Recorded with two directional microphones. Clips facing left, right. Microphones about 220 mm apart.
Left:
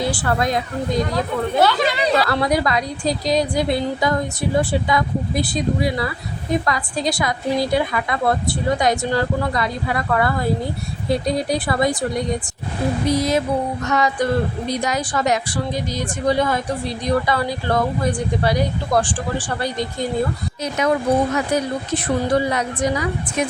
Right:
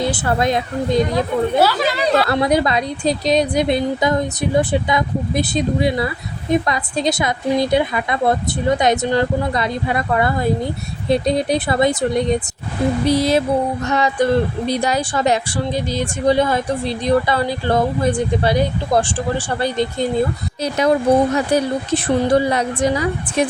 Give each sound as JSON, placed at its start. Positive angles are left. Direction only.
{"t": 0.1, "sound": "a woman's voice", "side_deg": -25}
{"t": 1.5, "sound": "speech", "side_deg": -5}
{"t": 2.2, "sound": "a woman's voice", "side_deg": -20}